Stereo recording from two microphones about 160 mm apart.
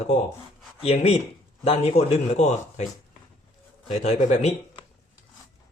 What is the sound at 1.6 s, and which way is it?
A man's voice, 40° left (ahead or behind).